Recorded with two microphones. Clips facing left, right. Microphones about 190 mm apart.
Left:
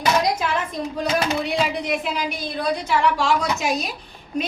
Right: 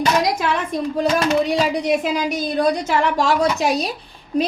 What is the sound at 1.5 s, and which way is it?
A woman's voice, 40° right (ahead or behind).